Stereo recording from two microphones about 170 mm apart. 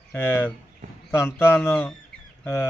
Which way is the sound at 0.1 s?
10° left (ahead or behind).